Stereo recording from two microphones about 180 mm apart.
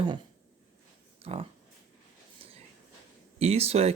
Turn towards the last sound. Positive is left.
turn(degrees=-35)  # may be behind; listen again after turning